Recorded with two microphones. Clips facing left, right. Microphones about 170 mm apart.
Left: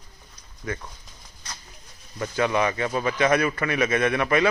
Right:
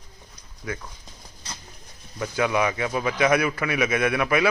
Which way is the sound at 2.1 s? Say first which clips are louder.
Even; 5° right (ahead or behind).